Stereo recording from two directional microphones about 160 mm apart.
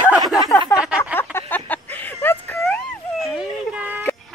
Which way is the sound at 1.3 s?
15° left (ahead or behind).